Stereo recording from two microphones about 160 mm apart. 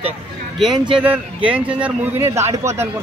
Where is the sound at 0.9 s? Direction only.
10° right (ahead or behind).